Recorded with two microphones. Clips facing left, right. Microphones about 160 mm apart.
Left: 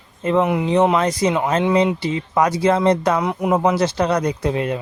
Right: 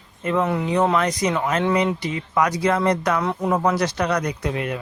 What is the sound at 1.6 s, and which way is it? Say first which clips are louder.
Speech: left 3 dB; 15° left (ahead or behind).